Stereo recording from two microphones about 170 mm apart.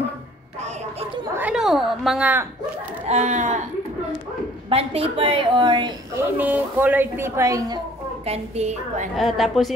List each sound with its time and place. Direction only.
1.3 s a sound: 5° right (ahead or behind)
3.1 s speech: 40° right (ahead or behind)
4.6 s a woman's voice: 35° right (ahead or behind)
6.1 s a woman's voice: 10° right (ahead or behind)
8.3 s a woman's voice: 40° right (ahead or behind)
9.1 s a woman's voice: centre (ahead or behind)